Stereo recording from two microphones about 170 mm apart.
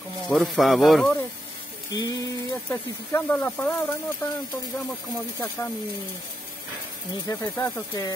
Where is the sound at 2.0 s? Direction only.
20° left (ahead or behind).